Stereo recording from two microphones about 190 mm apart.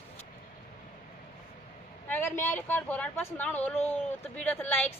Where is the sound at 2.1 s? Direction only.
10° left (ahead or behind).